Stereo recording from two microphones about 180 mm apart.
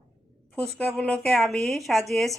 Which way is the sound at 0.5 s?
5° left (ahead or behind).